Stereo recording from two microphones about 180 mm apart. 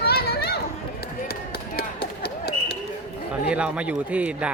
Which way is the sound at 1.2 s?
60° left (ahead or behind).